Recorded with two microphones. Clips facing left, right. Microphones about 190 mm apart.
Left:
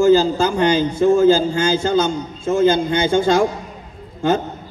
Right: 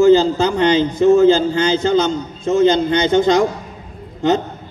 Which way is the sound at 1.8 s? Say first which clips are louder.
Right 2 dB; 10° left (ahead or behind).